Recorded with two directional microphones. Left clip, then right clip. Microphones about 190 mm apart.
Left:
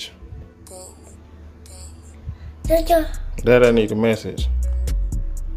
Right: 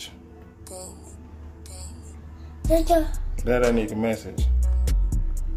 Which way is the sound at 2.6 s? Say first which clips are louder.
Left 4 dB; 15° left (ahead or behind).